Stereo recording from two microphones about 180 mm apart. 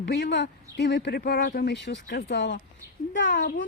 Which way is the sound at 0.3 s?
80° left.